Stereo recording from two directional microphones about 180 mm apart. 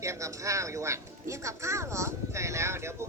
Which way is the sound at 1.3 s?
15° right (ahead or behind).